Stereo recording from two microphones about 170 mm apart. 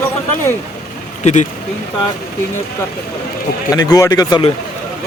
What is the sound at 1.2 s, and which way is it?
Speech, 45° left (ahead or behind).